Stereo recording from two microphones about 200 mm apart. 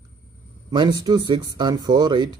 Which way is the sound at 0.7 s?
20° right (ahead or behind).